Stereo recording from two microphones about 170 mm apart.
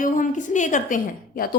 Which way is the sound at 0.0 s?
50° left (ahead or behind).